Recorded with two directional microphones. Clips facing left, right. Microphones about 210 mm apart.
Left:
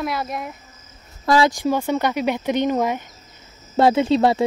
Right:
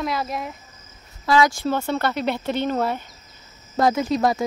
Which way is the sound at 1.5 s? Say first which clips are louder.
Left 3 dB; 15° left (ahead or behind).